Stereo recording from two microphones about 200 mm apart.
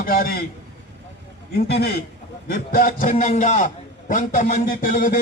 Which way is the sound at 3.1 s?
35° left (ahead or behind).